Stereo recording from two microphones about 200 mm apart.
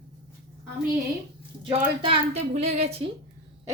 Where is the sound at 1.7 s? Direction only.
30° right (ahead or behind).